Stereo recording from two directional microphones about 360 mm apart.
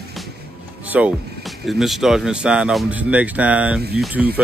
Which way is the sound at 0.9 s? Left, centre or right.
Centre.